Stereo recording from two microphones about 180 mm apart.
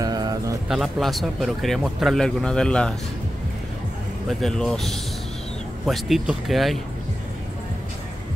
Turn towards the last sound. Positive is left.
turn(degrees=0)  # may be behind; listen again after turning